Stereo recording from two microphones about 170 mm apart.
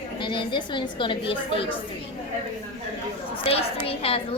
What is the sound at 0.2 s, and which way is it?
A woman's voice, 30° left (ahead or behind).